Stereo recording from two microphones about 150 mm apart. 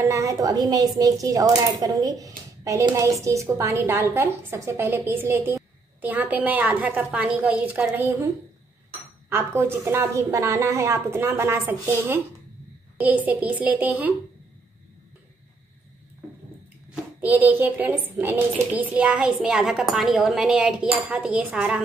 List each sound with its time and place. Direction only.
0.0 s a woman's voice: 20° right (ahead or behind)
9.3 s a woman's voice: 15° right (ahead or behind)
16.9 s a woman's voice: 10° right (ahead or behind)